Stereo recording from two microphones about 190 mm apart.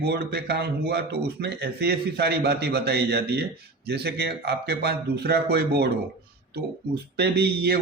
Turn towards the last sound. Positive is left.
turn(degrees=-55)  # may be behind; listen again after turning